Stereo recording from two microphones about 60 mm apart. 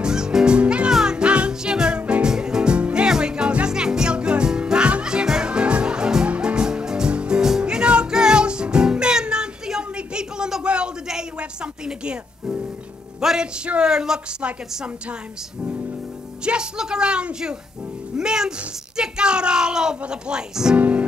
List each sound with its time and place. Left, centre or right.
0.0 s music: centre
13.2 s a sound: centre
13.7 s a woman's voice: centre
16.4 s a woman's voice: centre
20.7 s speech: right